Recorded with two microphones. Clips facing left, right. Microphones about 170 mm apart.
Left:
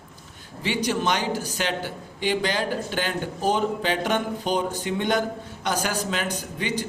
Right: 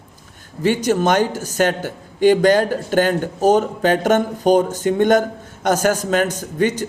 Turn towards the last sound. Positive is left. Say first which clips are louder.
# right 9 dB
turn(degrees=-45)  # may be behind; listen again after turning